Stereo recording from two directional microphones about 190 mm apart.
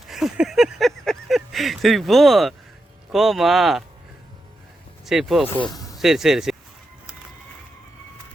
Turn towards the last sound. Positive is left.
turn(degrees=0)  # may be behind; listen again after turning